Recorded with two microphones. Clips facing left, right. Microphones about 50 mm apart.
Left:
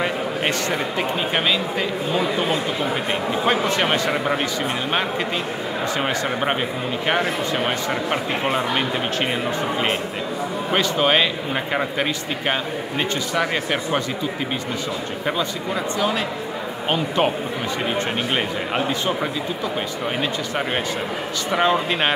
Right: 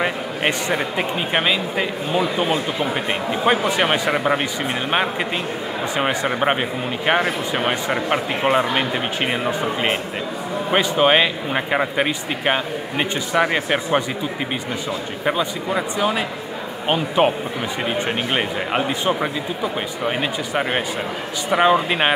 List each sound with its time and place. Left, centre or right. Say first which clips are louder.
0.0 s a man's voice: right 1 dB; centre
5.9 s a man's voice: right 5 dB; centre
15.2 s a man's voice: right 3 dB; centre